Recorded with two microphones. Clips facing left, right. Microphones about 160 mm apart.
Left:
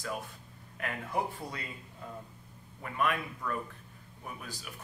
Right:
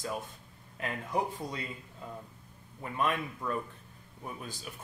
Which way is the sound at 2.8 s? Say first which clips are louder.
Even; 25° right (ahead or behind).